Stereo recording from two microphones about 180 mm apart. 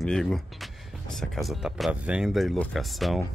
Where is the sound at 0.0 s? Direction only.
Centre (ahead or behind).